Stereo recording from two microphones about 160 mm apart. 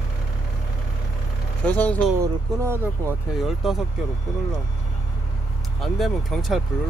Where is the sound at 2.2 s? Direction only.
15° right (ahead or behind).